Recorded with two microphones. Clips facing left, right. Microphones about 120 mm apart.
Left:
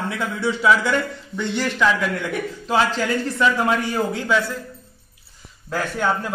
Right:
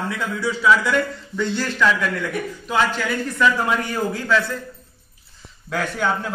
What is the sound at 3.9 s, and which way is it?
Speech, 25° left (ahead or behind).